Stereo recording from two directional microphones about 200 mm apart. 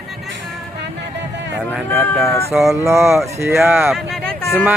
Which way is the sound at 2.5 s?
Centre (ahead or behind).